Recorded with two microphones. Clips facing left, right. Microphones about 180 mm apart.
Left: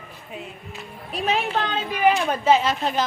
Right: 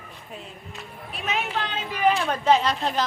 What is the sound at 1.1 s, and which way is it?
Speech, 35° left (ahead or behind).